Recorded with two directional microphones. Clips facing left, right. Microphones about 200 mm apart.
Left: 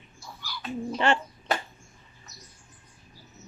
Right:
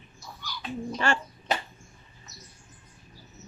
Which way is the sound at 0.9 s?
20° left (ahead or behind).